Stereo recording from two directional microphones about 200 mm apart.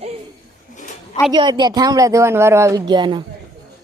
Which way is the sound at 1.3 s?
20° right (ahead or behind).